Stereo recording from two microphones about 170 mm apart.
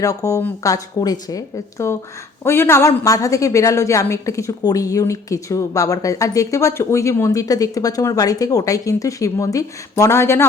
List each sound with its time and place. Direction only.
0.0 s a woman's voice: 20° left (ahead or behind)